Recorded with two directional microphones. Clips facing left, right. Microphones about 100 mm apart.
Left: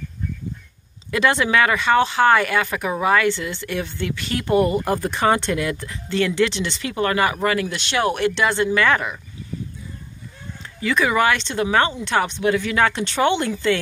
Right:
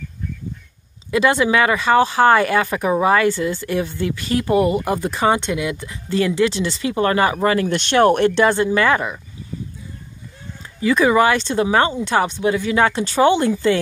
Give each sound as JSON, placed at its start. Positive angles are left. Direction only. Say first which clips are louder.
{"t": 1.1, "sound": "speech", "louder": "right 2 dB", "side_deg": -25}
{"t": 5.5, "sound": "speech", "louder": "even", "side_deg": -15}
{"t": 6.0, "sound": "speech", "louder": "right 2 dB", "side_deg": -30}
{"t": 7.7, "sound": "speech", "louder": "right 7 dB", "side_deg": -50}
{"t": 8.7, "sound": "speech", "louder": "right 2 dB", "side_deg": -25}
{"t": 10.8, "sound": "speech", "louder": "right 4 dB", "side_deg": -25}